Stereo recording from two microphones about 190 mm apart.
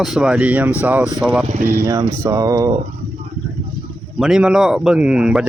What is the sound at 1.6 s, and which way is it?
Speech, 15° right (ahead or behind).